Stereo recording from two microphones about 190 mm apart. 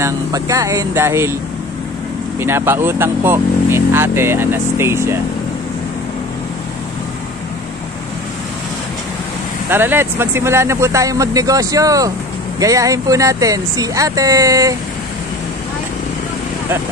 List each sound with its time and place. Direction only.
0.0 s speech: 15° right (ahead or behind)
2.4 s speech: 10° right (ahead or behind)
9.7 s speech: 10° right (ahead or behind)